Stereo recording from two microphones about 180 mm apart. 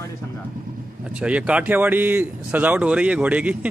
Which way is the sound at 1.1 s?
5° right (ahead or behind).